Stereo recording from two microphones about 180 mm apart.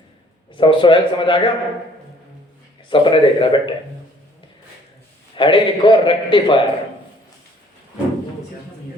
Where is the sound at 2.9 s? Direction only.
30° left (ahead or behind).